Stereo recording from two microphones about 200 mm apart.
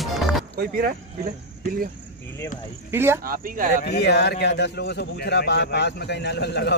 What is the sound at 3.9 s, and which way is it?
A man's voice, 55° left (ahead or behind).